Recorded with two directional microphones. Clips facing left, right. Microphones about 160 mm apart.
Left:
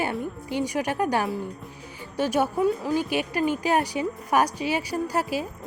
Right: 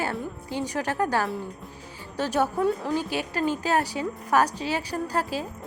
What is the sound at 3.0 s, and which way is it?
A woman's voice, 15° left (ahead or behind).